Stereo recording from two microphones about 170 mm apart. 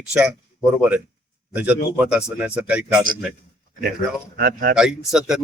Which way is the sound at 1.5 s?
10° right (ahead or behind).